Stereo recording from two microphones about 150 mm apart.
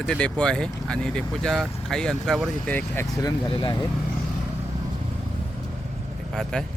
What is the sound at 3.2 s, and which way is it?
Speech, 30° left (ahead or behind).